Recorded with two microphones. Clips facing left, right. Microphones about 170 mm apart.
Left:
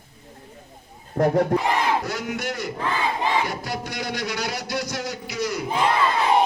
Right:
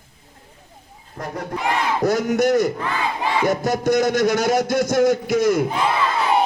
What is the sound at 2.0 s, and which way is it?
A man's voice, 40° right (ahead or behind).